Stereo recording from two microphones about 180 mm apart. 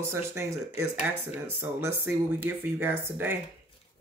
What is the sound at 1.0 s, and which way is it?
Speech, 10° right (ahead or behind).